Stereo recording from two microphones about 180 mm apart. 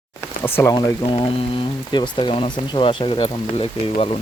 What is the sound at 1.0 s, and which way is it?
Speech, 30° left (ahead or behind).